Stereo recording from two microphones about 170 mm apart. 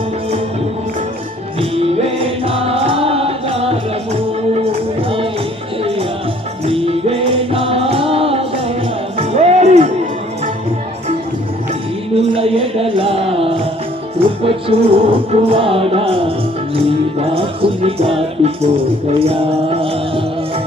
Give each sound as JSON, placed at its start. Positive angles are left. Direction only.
{"t": 1.7, "sound": "music", "side_deg": -35}
{"t": 6.7, "sound": "music", "side_deg": -35}
{"t": 12.1, "sound": "music", "side_deg": -35}